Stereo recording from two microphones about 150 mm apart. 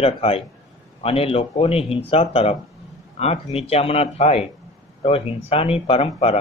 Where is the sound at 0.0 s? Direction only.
40° left (ahead or behind).